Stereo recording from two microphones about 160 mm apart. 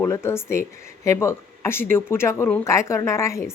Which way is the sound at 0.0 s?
15° left (ahead or behind).